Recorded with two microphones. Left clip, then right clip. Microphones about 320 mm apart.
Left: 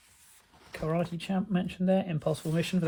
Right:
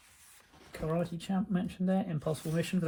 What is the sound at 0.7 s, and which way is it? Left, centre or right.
Speech, centre.